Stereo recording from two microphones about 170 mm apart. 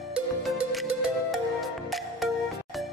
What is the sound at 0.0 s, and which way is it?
Music, centre (ahead or behind).